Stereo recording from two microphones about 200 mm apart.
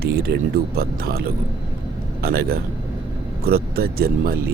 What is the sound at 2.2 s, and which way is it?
Speech, 50° right (ahead or behind).